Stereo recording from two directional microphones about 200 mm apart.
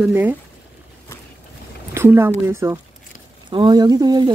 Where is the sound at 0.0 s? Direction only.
10° right (ahead or behind).